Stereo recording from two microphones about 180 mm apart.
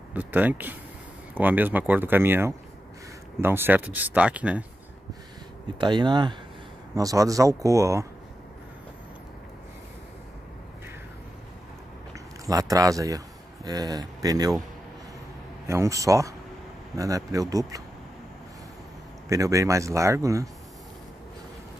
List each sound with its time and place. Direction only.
0.1 s speech: 10° right (ahead or behind)
5.8 s speech: 25° right (ahead or behind)
12.1 s a sound: 20° right (ahead or behind)
13.7 s speech: 20° right (ahead or behind)
15.6 s speech: 15° right (ahead or behind)
19.2 s speech: 20° right (ahead or behind)